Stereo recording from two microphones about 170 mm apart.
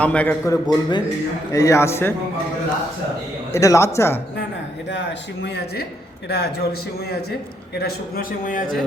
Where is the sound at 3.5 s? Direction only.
15° left (ahead or behind).